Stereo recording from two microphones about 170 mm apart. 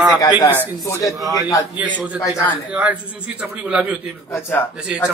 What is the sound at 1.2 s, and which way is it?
Speech, 20° right (ahead or behind).